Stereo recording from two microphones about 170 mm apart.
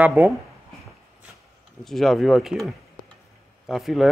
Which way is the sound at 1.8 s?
Centre (ahead or behind).